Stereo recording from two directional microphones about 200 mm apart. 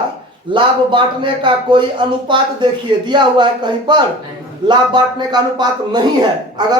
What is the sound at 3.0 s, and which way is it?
A man's voice, 20° right (ahead or behind).